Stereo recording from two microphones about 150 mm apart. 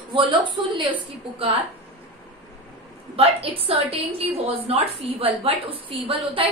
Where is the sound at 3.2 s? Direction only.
40° right (ahead or behind).